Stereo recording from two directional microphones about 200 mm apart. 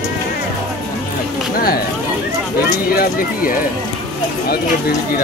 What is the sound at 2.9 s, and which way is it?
Speech, 45° left (ahead or behind).